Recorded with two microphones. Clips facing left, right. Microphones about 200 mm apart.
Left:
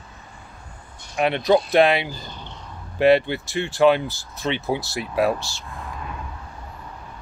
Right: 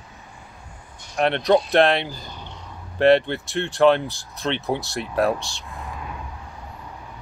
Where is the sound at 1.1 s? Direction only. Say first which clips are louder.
Even; 5° left (ahead or behind).